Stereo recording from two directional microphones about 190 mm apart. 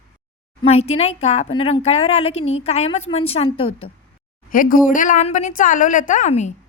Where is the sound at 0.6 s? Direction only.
35° left (ahead or behind).